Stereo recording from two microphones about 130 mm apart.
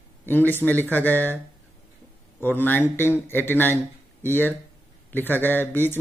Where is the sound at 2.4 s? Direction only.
15° left (ahead or behind).